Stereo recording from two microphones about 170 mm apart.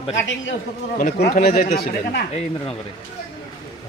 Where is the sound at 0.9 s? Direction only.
55° left (ahead or behind).